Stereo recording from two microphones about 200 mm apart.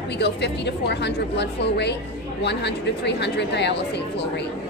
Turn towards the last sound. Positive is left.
turn(degrees=55)  # may be behind; listen again after turning